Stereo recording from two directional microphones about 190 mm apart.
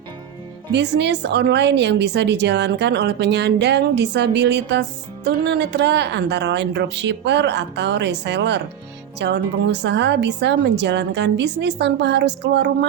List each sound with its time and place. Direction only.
0.7 s a woman's voice: 65° right (ahead or behind)